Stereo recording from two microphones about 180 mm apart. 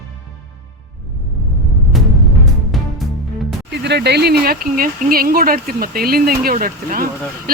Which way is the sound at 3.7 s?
70° right (ahead or behind).